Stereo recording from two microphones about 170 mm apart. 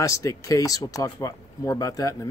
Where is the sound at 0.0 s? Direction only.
20° left (ahead or behind).